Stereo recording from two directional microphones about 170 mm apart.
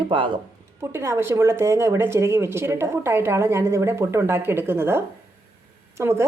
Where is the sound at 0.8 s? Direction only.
15° right (ahead or behind).